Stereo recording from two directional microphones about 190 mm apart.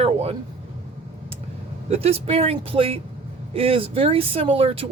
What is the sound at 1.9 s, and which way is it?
Speech, 30° right (ahead or behind).